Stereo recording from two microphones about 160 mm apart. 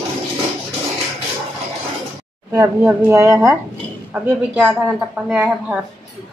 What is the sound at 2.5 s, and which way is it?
Speech, 20° right (ahead or behind).